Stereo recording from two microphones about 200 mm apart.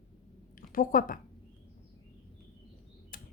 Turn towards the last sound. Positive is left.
turn(degrees=45)  # may be behind; listen again after turning